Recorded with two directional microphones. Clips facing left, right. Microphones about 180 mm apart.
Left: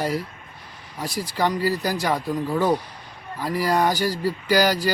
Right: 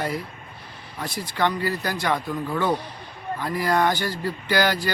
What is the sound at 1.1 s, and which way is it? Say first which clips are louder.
Speech: left 5 dB; 40° left (ahead or behind).